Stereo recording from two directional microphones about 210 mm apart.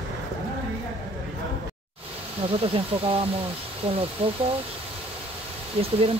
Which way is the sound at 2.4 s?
25° right (ahead or behind).